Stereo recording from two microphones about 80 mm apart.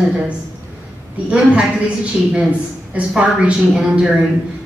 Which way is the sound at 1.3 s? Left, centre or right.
Centre.